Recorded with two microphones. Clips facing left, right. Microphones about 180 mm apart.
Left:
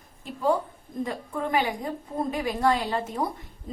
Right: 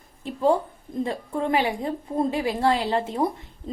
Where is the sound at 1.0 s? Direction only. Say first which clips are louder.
Right 3 dB; 25° right (ahead or behind).